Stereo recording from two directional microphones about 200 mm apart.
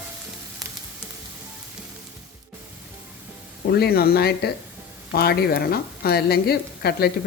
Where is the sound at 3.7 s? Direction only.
50° left (ahead or behind).